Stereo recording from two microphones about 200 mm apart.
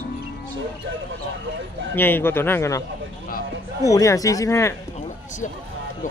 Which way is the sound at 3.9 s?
15° left (ahead or behind).